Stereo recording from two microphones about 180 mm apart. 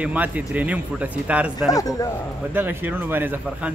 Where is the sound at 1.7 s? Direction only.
20° left (ahead or behind).